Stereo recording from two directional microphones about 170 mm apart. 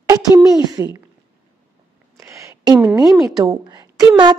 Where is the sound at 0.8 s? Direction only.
20° right (ahead or behind).